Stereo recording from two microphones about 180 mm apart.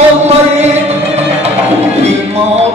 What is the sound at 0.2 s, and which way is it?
Chant, 35° right (ahead or behind).